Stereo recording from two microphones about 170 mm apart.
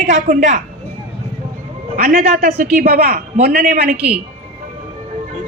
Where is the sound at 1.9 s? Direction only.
55° right (ahead or behind).